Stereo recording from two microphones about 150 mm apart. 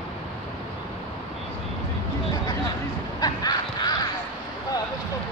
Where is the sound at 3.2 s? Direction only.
25° left (ahead or behind).